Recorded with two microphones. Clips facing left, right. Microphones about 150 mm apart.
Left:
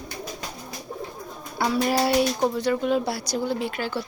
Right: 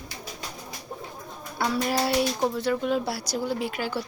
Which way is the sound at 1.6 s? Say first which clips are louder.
Left 3 dB; centre (ahead or behind).